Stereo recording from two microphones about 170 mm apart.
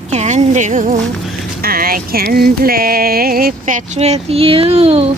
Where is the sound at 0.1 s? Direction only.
45° right (ahead or behind).